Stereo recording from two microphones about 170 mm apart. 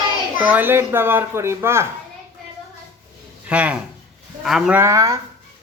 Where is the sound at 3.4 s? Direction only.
10° right (ahead or behind).